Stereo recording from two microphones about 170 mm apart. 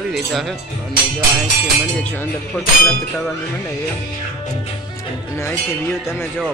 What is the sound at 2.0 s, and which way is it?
Speech, 10° left (ahead or behind).